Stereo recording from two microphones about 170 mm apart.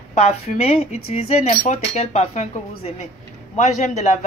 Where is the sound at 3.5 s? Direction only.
45° left (ahead or behind).